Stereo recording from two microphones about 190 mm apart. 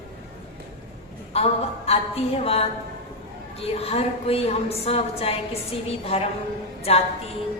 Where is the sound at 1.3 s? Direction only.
30° left (ahead or behind).